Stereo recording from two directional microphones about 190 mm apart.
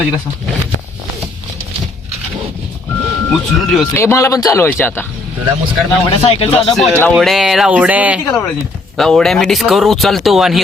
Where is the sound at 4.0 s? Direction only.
15° left (ahead or behind).